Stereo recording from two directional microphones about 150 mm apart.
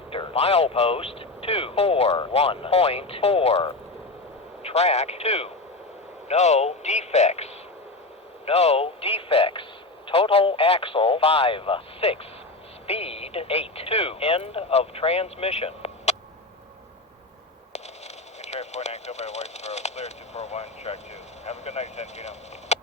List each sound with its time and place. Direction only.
0.1 s speech: 40° left (ahead or behind)
18.4 s speech: 50° left (ahead or behind)